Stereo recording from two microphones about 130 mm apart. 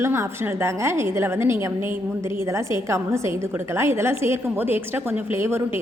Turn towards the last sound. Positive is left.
turn(degrees=-20)  # may be behind; listen again after turning